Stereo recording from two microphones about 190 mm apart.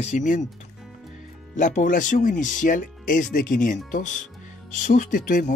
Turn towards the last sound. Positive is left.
turn(degrees=45)  # may be behind; listen again after turning